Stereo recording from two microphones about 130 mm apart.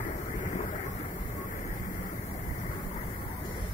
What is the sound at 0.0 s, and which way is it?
Vehicle, 75° left (ahead or behind).